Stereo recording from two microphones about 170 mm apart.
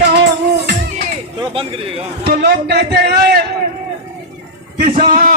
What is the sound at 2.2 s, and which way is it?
Speech, 75° right (ahead or behind).